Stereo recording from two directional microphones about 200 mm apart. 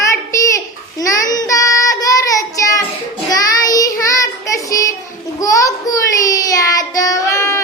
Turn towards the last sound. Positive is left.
turn(degrees=15)  # may be behind; listen again after turning